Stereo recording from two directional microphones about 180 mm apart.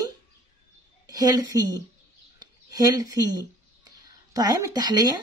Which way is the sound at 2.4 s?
20° right (ahead or behind).